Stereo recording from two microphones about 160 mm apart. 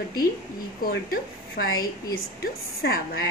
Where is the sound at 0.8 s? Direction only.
70° left (ahead or behind).